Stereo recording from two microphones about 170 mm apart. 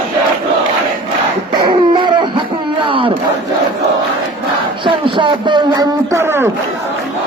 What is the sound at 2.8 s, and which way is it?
Crowd, 30° right (ahead or behind).